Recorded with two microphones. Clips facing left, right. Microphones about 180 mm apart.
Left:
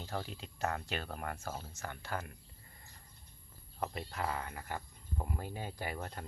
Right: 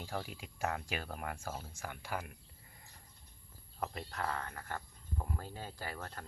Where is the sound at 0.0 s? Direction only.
10° right (ahead or behind).